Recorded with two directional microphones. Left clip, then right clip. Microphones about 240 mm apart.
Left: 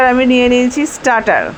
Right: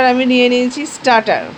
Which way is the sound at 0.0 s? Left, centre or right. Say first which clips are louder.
Left 1 dB; centre.